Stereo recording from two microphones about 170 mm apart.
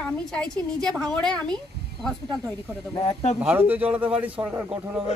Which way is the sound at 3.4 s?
10° right (ahead or behind).